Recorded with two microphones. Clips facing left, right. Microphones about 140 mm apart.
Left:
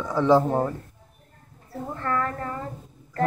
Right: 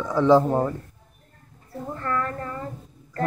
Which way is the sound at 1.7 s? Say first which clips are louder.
Even; 5° left (ahead or behind).